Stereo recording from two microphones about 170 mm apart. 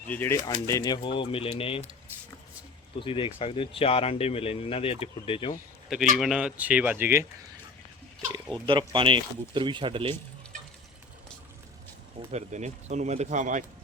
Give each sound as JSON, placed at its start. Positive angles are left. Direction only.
{"t": 0.1, "sound": "speech", "side_deg": 10}
{"t": 3.0, "sound": "speech", "side_deg": 30}
{"t": 6.1, "sound": "speech", "side_deg": 0}
{"t": 8.6, "sound": "speech", "side_deg": -30}
{"t": 12.3, "sound": "speech", "side_deg": -45}